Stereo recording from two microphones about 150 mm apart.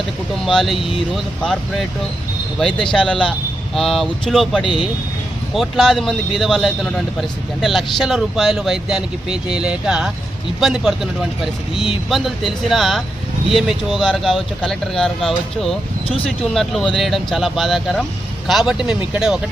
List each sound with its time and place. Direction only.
0.4 s a man's voice: centre (ahead or behind)
2.6 s a man's voice: 5° left (ahead or behind)